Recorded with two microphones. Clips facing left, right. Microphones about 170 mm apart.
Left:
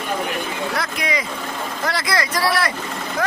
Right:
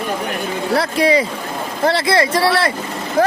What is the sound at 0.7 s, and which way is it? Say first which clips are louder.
Speech: right 13 dB; 30° right (ahead or behind).